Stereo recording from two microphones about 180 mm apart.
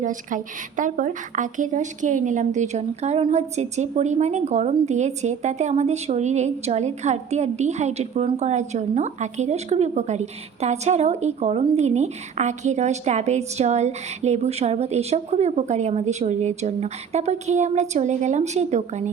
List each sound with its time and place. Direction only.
0.0 s speech: 45° right (ahead or behind)